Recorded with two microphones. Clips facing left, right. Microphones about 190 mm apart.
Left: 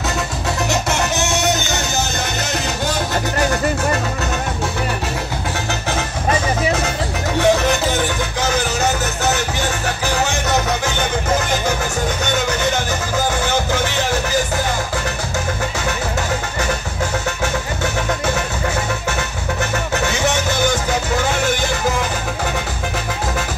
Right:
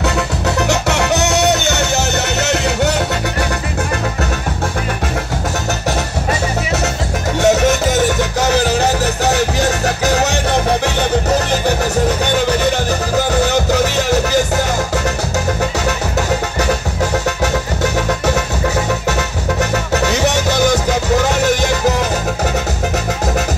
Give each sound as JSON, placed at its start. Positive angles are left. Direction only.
{"t": 0.7, "sound": "music", "side_deg": -65}
{"t": 7.3, "sound": "music", "side_deg": -45}
{"t": 13.3, "sound": "music", "side_deg": -40}
{"t": 19.6, "sound": "music", "side_deg": -40}